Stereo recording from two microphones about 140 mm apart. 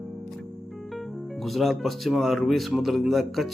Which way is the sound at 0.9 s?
Centre (ahead or behind).